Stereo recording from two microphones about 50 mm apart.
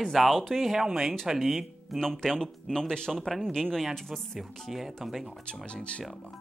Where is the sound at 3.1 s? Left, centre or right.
Centre.